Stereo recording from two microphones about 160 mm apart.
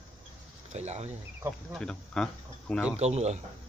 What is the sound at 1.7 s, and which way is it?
Speech, 5° left (ahead or behind).